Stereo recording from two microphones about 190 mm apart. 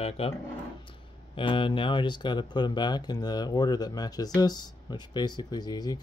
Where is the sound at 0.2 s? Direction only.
30° left (ahead or behind).